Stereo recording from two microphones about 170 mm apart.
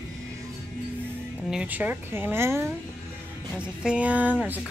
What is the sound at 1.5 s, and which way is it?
A woman's voice, 10° right (ahead or behind).